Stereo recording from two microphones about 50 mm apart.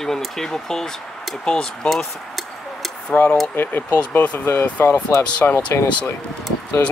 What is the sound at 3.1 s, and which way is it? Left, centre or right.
Speech, left.